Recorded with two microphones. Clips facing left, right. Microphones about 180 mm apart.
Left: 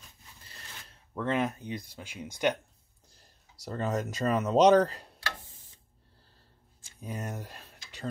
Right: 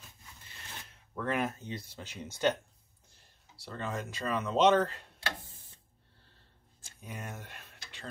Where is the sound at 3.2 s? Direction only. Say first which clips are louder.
Right 1 dB; 40° left (ahead or behind).